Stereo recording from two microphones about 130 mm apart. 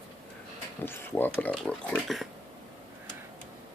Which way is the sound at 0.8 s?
15° left (ahead or behind).